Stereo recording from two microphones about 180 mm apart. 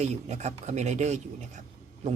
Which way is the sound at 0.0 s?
35° right (ahead or behind).